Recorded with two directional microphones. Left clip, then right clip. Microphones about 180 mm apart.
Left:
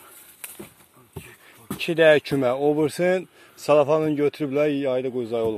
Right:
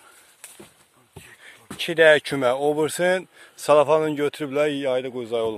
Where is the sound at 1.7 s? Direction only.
25° right (ahead or behind).